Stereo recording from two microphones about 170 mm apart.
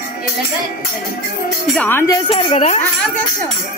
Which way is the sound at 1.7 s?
10° left (ahead or behind).